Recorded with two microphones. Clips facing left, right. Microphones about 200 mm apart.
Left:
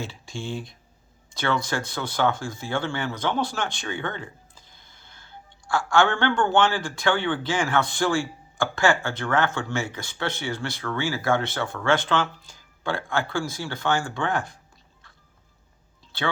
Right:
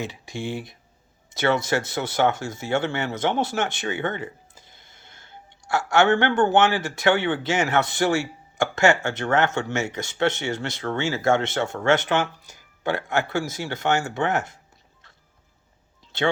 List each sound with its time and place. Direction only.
0.0 s speech: 20° right (ahead or behind)